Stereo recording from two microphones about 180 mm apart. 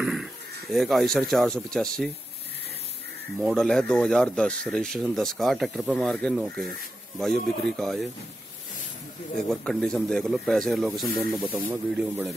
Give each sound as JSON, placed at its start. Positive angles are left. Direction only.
{"t": 0.0, "sound": "speech", "side_deg": 0}
{"t": 3.5, "sound": "speech", "side_deg": 5}
{"t": 9.5, "sound": "speech", "side_deg": 0}